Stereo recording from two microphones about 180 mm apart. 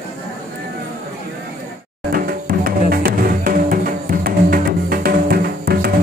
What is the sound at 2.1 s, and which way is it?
Music, 55° right (ahead or behind).